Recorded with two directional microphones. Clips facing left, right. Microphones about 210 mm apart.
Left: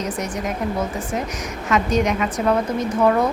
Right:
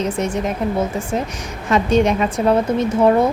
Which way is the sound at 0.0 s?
25° right (ahead or behind).